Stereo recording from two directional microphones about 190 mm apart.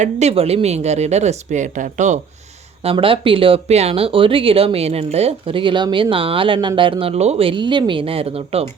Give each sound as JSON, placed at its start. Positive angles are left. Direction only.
{"t": 0.0, "sound": "speech", "side_deg": -35}
{"t": 2.8, "sound": "speech", "side_deg": -30}